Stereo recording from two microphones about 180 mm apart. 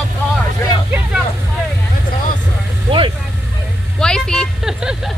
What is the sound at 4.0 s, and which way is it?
Vehicle, 5° left (ahead or behind).